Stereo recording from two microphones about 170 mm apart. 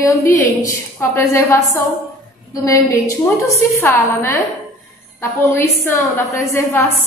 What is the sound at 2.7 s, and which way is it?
A woman's voice, 20° left (ahead or behind).